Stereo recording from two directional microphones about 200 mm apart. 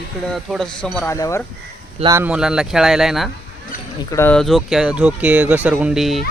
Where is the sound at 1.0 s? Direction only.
15° left (ahead or behind).